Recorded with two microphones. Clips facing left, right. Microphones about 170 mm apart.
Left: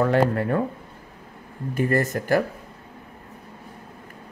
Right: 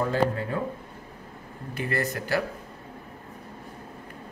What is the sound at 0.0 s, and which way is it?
Speech, 65° left (ahead or behind).